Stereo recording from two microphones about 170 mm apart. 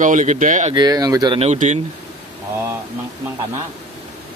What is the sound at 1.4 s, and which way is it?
Speech, 40° right (ahead or behind).